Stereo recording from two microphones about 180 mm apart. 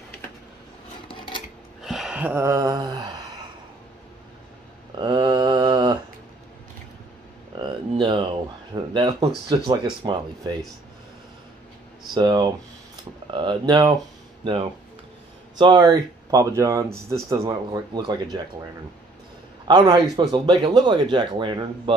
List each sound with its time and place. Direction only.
1.0 s scissors: 25° left (ahead or behind)
1.8 s gasp: centre (ahead or behind); by 3.1 s 20° right (ahead or behind)
4.9 s mantra: 25° right (ahead or behind)
7.5 s a sound: 30° right (ahead or behind)
9.5 s speech: 25° right (ahead or behind)
12.1 s speech: 25° right (ahead or behind)
19.7 s speech: 25° right (ahead or behind)